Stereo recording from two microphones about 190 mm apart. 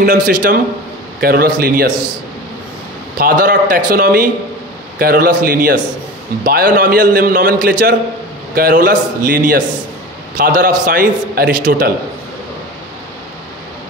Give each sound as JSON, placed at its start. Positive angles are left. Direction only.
{"t": 0.0, "sound": "a man's voice", "side_deg": -45}
{"t": 3.2, "sound": "a man's voice", "side_deg": -45}